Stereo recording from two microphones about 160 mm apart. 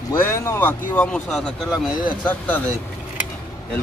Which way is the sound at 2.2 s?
10° left (ahead or behind).